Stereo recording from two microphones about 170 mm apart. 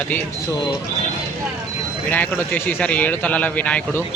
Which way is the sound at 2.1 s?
10° left (ahead or behind).